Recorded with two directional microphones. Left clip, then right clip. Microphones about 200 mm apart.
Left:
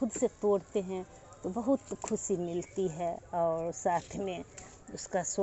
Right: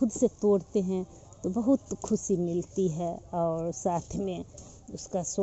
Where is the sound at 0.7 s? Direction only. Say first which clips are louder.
Right 4 dB; 30° right (ahead or behind).